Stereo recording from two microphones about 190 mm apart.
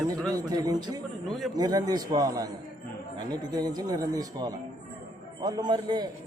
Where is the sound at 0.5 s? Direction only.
20° right (ahead or behind).